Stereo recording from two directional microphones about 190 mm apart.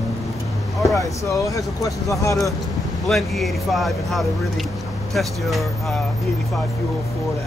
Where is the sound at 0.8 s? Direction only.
15° left (ahead or behind).